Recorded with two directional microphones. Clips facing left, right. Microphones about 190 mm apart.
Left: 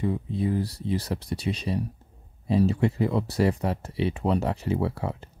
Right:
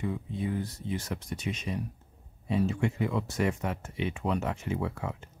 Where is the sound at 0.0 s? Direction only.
35° left (ahead or behind).